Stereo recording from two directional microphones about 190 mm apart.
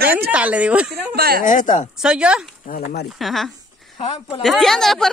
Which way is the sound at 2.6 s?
50° left (ahead or behind).